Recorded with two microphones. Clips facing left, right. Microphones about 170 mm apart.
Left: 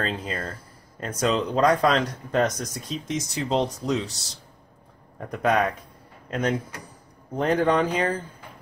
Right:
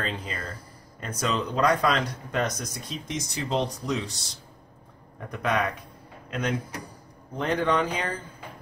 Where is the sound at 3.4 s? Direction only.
30° left (ahead or behind).